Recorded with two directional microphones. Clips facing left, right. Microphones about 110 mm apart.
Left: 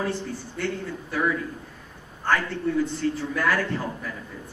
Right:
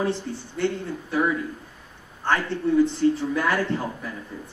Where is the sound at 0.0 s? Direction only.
25° right (ahead or behind).